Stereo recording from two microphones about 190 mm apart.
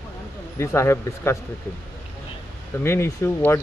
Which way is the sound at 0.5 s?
15° left (ahead or behind).